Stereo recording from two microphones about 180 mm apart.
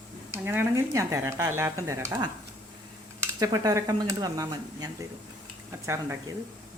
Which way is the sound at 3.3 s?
20° right (ahead or behind).